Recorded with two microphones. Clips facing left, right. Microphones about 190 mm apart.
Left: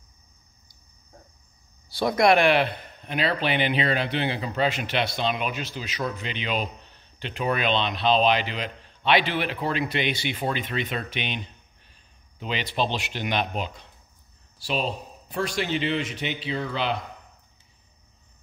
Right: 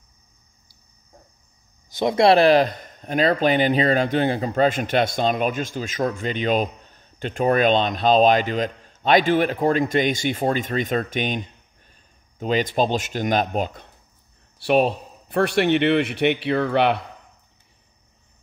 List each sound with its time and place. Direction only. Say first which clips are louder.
1.9 s speech: right 4 dB; 20° right (ahead or behind); by 13.8 s 45° right (ahead or behind)
14.6 s a man's voice: right 9 dB; 60° right (ahead or behind)